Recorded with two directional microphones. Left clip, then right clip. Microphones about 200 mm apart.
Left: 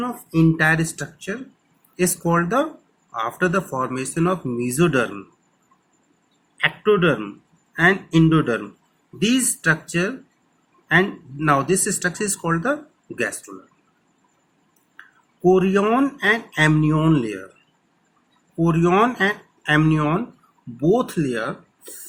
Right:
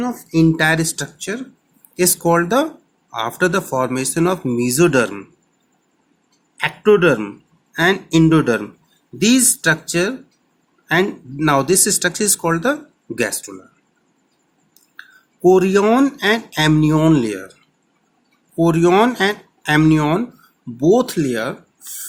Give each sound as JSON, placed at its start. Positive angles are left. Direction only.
{"t": 0.0, "sound": "speech", "side_deg": -50}
{"t": 6.6, "sound": "speech", "side_deg": -70}
{"t": 14.9, "sound": "speech", "side_deg": -65}
{"t": 18.6, "sound": "speech", "side_deg": -65}
{"t": 20.7, "sound": "speech", "side_deg": -55}